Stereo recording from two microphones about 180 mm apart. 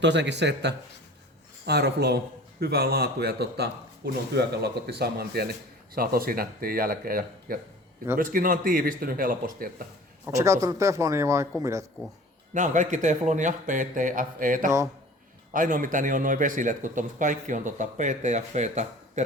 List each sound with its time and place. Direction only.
0.0 s a man's voice: 75° right (ahead or behind); by 9.8 s 50° right (ahead or behind)
10.2 s speech: 15° right (ahead or behind)
12.5 s speech: 45° right (ahead or behind)